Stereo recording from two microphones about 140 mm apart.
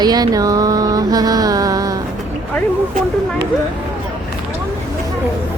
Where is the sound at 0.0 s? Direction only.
30° right (ahead or behind).